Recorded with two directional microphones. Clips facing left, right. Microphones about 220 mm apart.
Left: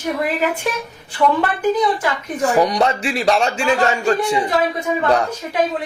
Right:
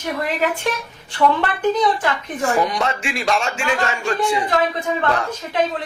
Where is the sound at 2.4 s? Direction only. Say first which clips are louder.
Left 4 dB; 35° left (ahead or behind).